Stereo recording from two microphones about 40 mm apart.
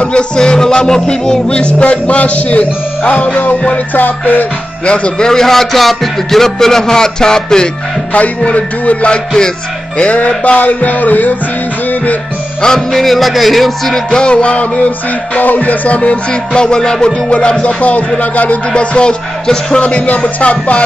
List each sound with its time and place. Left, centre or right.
0.4 s music: centre
1.8 s music: left
4.8 s music: left
5.3 s music: centre
8.5 s music: left
12.6 s speech: centre
14.1 s music: left
15.3 s music: left
18.8 s music: left
19.8 s music: left